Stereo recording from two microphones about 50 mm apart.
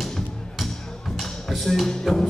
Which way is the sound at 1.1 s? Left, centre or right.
Centre.